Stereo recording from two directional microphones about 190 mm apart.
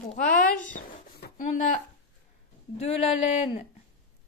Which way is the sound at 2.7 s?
35° left (ahead or behind).